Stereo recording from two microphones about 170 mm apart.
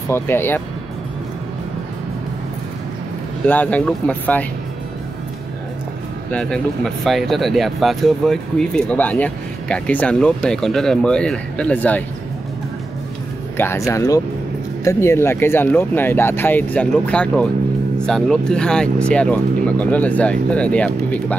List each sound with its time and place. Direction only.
0.1 s speech: 15° left (ahead or behind)
3.4 s speech: 10° left (ahead or behind)
6.3 s speech: 5° left (ahead or behind)
13.6 s speech: 15° left (ahead or behind)